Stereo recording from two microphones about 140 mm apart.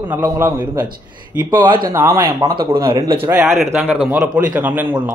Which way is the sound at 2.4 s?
35° right (ahead or behind).